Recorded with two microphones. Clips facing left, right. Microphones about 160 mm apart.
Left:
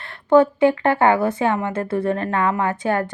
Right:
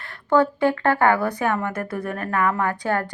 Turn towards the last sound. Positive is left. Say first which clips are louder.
# left 2 dB
turn(degrees=20)  # may be behind; listen again after turning